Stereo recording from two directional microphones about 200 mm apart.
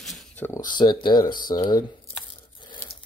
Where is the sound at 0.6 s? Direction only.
20° left (ahead or behind).